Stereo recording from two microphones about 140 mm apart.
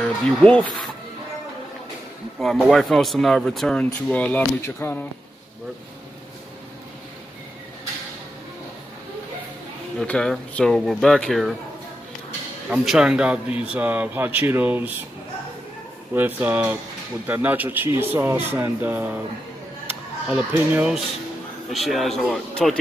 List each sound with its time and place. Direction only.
0.0 s speech: 10° left (ahead or behind)
2.3 s speech: centre (ahead or behind); by 5.0 s 15° left (ahead or behind)
9.9 s speech: 5° left (ahead or behind)
12.6 s speech: 5° right (ahead or behind)
16.2 s speech: 15° right (ahead or behind); by 22.8 s centre (ahead or behind)